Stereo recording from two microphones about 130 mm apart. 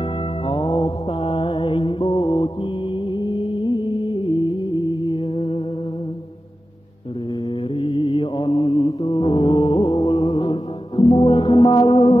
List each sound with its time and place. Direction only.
0.5 s music: 35° left (ahead or behind)
1.2 s mantra: 50° left (ahead or behind)
1.5 s music: 40° left (ahead or behind)
7.7 s mantra: 40° left (ahead or behind)
11.0 s music: 50° left (ahead or behind)
11.2 s music: 30° left (ahead or behind)